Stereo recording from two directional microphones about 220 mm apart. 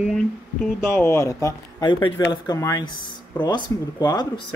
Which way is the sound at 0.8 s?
10° left (ahead or behind).